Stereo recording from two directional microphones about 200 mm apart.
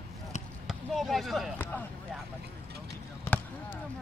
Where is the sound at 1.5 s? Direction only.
10° left (ahead or behind).